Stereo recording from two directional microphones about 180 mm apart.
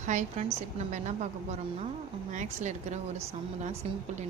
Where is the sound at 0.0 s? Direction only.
40° right (ahead or behind).